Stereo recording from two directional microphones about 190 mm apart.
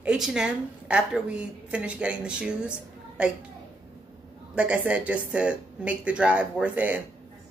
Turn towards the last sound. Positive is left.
turn(degrees=-10)  # may be behind; listen again after turning